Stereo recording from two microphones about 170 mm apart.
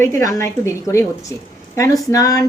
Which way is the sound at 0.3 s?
15° left (ahead or behind).